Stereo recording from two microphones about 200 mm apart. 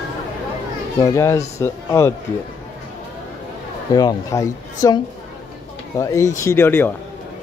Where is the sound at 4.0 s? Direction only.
15° left (ahead or behind).